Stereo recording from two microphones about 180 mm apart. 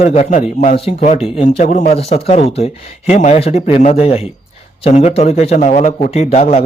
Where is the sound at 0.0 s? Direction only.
35° left (ahead or behind).